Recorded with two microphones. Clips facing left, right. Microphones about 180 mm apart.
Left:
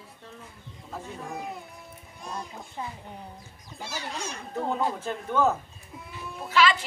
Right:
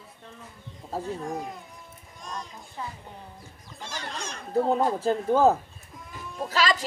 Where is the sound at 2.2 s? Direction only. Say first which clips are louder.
Left 1 dB; 10° left (ahead or behind).